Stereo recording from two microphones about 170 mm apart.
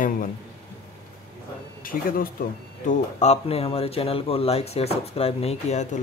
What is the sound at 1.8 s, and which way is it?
Speech, 55° left (ahead or behind).